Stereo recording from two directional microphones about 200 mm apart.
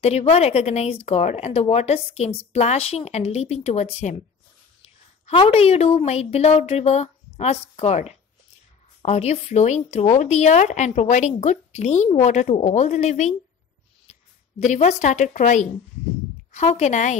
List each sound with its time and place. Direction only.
0.0 s a woman's voice: 30° left (ahead or behind)
14.6 s speech: 35° left (ahead or behind)